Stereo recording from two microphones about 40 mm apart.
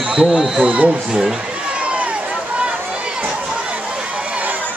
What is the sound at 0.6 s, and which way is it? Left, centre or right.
Speech, right.